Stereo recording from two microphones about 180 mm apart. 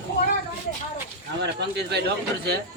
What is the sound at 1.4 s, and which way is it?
Bird, 70° right (ahead or behind).